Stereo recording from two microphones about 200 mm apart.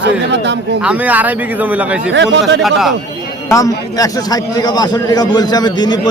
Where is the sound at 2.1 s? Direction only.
65° right (ahead or behind).